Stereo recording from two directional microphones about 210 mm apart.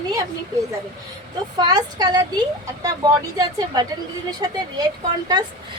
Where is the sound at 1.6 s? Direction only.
20° right (ahead or behind).